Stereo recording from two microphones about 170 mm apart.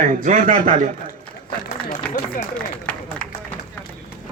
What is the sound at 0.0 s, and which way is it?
Speech, 50° right (ahead or behind).